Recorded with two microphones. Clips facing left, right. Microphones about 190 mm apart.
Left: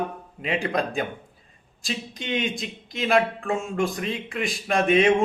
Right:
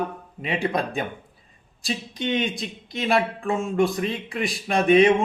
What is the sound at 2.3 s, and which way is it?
Speech, centre (ahead or behind).